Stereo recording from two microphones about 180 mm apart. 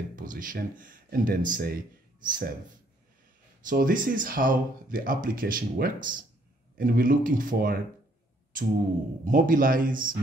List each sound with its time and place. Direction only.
0.1 s speech: 50° right (ahead or behind)
3.6 s speech: 50° right (ahead or behind)